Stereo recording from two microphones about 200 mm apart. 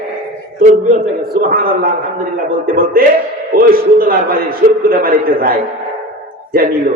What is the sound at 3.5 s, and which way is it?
A man's voice, 45° right (ahead or behind).